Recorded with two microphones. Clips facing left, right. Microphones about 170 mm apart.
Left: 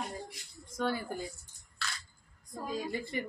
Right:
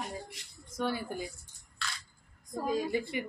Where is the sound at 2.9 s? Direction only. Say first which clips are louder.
Right 3 dB; 10° right (ahead or behind).